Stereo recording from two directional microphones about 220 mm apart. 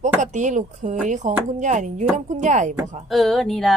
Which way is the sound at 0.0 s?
35° right (ahead or behind).